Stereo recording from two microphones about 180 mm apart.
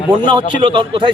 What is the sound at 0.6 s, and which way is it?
Speech, 25° right (ahead or behind).